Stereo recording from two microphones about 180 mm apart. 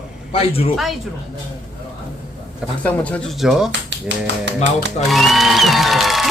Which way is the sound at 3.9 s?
80° right.